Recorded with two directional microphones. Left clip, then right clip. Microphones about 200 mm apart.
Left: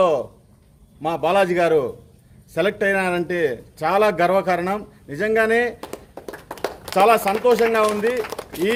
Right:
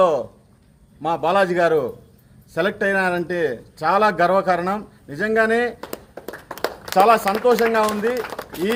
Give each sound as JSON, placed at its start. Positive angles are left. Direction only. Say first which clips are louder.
{"t": 0.0, "sound": "a man's voice", "louder": "right 1 dB", "side_deg": 15}
{"t": 5.9, "sound": "a sound", "louder": "right 1 dB", "side_deg": -45}
{"t": 6.9, "sound": "a man's voice", "louder": "right 1 dB", "side_deg": 15}